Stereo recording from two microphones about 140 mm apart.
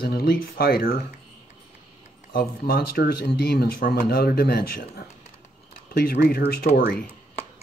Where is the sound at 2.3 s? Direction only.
90° left.